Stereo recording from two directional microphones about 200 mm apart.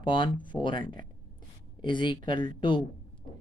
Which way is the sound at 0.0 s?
25° left (ahead or behind).